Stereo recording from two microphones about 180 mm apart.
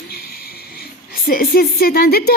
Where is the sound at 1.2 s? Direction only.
55° left (ahead or behind).